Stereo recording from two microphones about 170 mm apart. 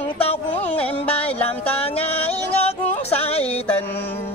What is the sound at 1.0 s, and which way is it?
Music, 35° left (ahead or behind).